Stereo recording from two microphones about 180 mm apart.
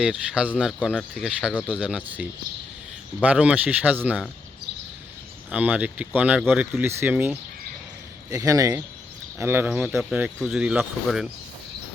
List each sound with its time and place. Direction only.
0.0 s speech: 5° right (ahead or behind)
5.5 s speech: 10° right (ahead or behind)